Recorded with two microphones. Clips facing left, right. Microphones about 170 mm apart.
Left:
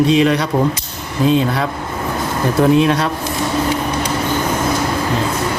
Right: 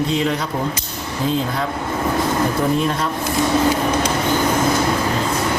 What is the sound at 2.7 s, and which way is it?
Speech, 75° left (ahead or behind).